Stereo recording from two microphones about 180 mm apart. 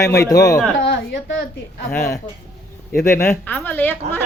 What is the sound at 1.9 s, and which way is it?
A woman's voice, 10° left (ahead or behind).